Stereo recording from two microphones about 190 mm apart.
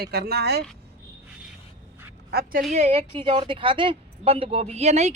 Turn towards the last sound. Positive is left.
turn(degrees=-35)  # may be behind; listen again after turning